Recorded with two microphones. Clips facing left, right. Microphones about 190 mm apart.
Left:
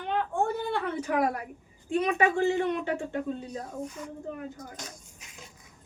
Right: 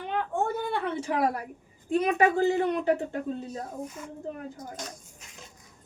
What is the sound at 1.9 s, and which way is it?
Speech, 40° right (ahead or behind).